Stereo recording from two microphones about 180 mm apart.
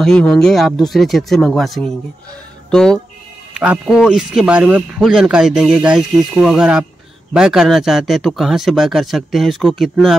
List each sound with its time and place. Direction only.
0.0 s speech: 5° left (ahead or behind)